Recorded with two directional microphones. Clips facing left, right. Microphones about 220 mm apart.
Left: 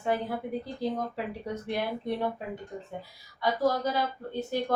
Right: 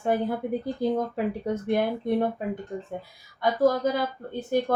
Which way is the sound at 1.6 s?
50° right (ahead or behind).